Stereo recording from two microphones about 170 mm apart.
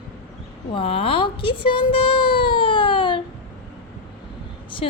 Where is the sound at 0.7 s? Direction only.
30° left (ahead or behind).